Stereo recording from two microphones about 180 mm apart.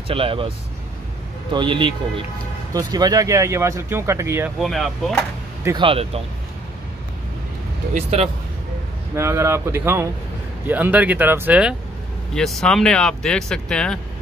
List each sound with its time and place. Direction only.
0.1 s speech: 30° right (ahead or behind)
1.5 s speech: 25° right (ahead or behind)
4.6 s speech: centre (ahead or behind)
5.8 s speech: 30° right (ahead or behind)
7.9 s speech: 35° right (ahead or behind)
9.1 s speech: 15° right (ahead or behind)
12.4 s speech: 5° left (ahead or behind)